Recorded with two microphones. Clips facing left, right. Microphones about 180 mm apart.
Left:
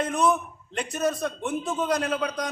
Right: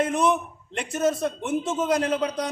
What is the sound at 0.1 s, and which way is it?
Speech, 25° right (ahead or behind).